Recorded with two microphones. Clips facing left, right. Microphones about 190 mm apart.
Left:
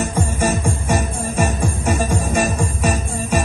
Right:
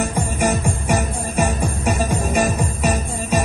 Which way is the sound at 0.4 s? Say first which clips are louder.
Right 1 dB; 15° right (ahead or behind).